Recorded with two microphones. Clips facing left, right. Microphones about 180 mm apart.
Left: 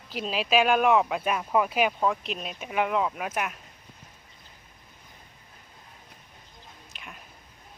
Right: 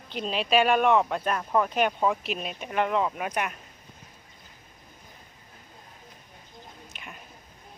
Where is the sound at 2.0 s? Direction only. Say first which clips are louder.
Right 1 dB; 5° right (ahead or behind).